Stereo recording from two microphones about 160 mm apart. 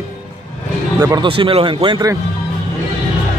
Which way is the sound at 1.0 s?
20° right (ahead or behind).